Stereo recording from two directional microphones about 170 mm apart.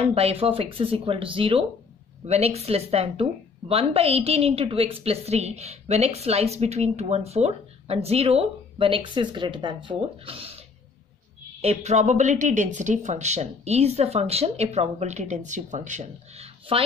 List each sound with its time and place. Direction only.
0.0 s a woman's voice: 35° right (ahead or behind)
11.6 s speech: 40° right (ahead or behind)